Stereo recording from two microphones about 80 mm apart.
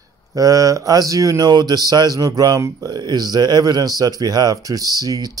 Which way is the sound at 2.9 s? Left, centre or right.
Right.